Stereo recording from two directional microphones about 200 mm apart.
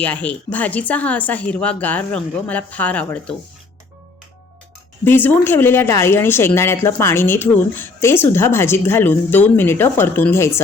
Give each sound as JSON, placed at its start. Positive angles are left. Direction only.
{"t": 0.0, "sound": "speech", "side_deg": 5}
{"t": 5.0, "sound": "speech", "side_deg": 10}